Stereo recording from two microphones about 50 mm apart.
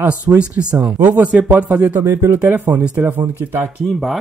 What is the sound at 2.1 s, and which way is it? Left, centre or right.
Speech, right.